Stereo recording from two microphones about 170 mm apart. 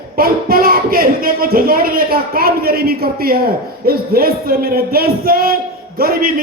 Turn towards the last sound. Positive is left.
turn(degrees=-60)  # may be behind; listen again after turning